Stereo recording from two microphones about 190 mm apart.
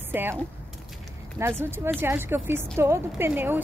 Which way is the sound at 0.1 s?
10° right (ahead or behind).